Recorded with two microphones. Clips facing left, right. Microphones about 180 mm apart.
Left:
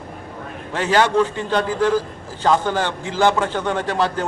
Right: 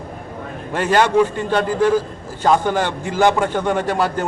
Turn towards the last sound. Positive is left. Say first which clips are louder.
# right 2 dB
turn(degrees=-10)  # may be behind; listen again after turning